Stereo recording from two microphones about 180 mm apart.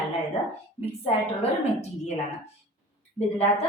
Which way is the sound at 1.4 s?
35° left (ahead or behind).